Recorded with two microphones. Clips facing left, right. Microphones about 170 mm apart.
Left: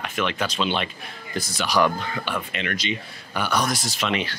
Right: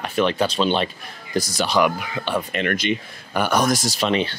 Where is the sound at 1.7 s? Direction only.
15° right (ahead or behind).